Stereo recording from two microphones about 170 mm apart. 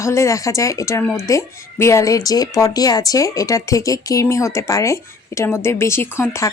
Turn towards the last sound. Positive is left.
turn(degrees=15)  # may be behind; listen again after turning